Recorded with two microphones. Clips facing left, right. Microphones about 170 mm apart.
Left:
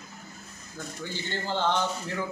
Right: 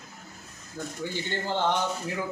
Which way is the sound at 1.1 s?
15° right (ahead or behind).